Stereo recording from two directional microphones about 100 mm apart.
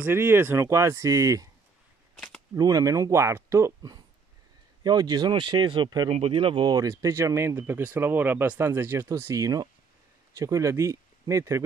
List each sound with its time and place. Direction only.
0.0 s speech: 25° right (ahead or behind)
2.5 s speech: 35° right (ahead or behind)
4.8 s speech: 45° right (ahead or behind)
6.0 s speech: 80° right; by 6.7 s 60° right (ahead or behind)
6.7 s speech: 35° right (ahead or behind)